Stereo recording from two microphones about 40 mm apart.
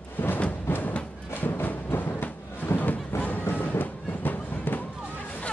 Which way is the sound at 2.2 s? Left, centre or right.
Left.